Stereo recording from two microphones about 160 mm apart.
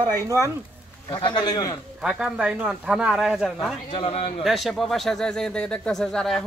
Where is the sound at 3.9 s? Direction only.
40° left (ahead or behind).